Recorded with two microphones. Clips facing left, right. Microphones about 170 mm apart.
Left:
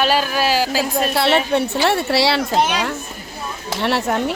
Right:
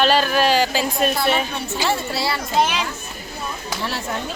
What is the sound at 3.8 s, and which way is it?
Speech, 70° left (ahead or behind).